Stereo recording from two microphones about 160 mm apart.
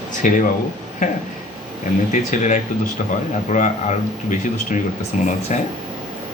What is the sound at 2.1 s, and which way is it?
Speech, 50° left (ahead or behind).